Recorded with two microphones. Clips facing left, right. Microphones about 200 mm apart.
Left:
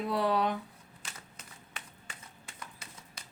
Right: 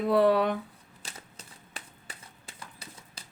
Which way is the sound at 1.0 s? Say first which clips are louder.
Right 3 dB; 35° right (ahead or behind).